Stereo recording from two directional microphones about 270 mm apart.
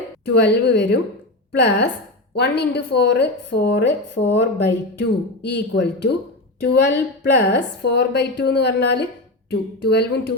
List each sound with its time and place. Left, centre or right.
0.3 s a woman's voice: left